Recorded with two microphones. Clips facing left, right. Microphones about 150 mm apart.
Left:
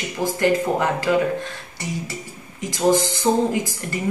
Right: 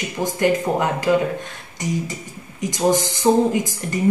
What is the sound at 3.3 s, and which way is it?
Speech, 15° right (ahead or behind).